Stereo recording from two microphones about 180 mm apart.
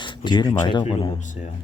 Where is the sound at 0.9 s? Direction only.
30° left (ahead or behind).